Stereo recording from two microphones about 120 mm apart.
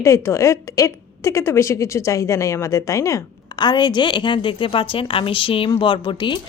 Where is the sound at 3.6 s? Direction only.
40° left (ahead or behind).